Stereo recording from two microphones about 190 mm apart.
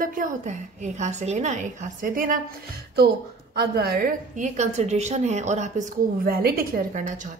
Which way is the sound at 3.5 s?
55° right (ahead or behind).